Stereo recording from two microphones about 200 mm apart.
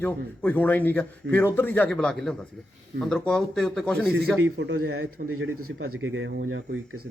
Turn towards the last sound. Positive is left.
turn(degrees=-75)  # may be behind; listen again after turning